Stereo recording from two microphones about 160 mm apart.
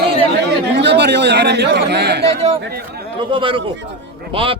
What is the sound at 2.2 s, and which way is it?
Speech, 40° right (ahead or behind).